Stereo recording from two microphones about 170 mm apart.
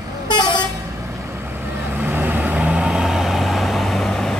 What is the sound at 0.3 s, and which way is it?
Vehicle, 25° left (ahead or behind).